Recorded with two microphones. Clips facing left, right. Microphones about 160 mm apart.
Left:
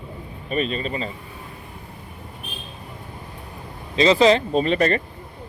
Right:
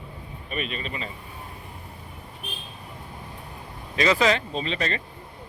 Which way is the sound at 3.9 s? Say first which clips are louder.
Left 6 dB; 25° left (ahead or behind).